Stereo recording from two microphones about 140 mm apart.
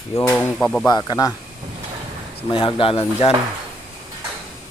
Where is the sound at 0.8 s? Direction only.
30° left (ahead or behind).